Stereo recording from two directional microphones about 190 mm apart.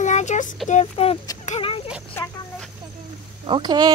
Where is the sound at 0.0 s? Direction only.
40° left (ahead or behind).